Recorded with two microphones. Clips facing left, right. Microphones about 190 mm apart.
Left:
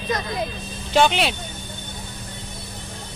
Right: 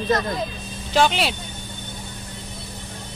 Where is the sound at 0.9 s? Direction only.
Centre (ahead or behind).